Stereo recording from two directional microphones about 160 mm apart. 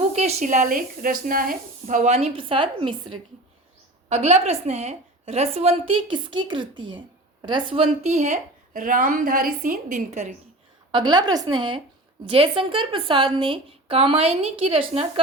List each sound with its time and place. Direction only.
0.1 s a woman's voice: 45° right (ahead or behind)
4.1 s a woman's voice: 45° right (ahead or behind)
10.9 s a woman's voice: 25° right (ahead or behind)